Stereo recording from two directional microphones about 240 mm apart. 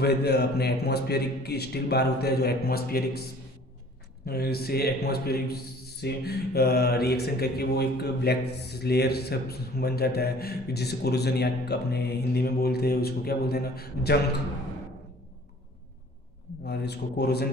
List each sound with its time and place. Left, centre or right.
0.0 s a man's voice: left
4.3 s a man's voice: left
16.6 s a man's voice: left